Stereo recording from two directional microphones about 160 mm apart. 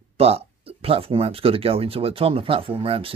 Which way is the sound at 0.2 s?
40° right (ahead or behind).